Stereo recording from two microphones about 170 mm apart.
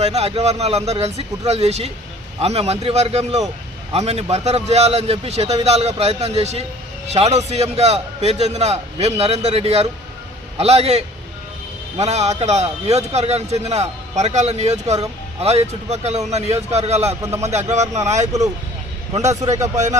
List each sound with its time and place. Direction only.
0.0 s a man's voice: 40° right (ahead or behind)
19.7 s speech: 45° right (ahead or behind)